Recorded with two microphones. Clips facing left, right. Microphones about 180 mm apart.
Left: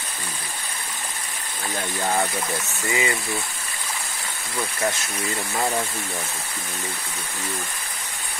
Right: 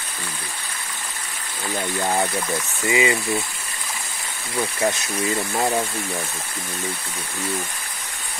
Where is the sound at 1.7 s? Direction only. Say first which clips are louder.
Right 2 dB; 15° right (ahead or behind).